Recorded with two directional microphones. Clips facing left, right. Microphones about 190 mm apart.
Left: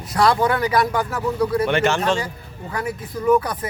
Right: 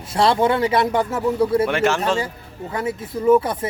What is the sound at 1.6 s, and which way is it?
Speech, centre (ahead or behind).